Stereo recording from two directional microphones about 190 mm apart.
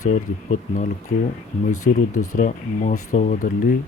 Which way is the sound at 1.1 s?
45° left (ahead or behind).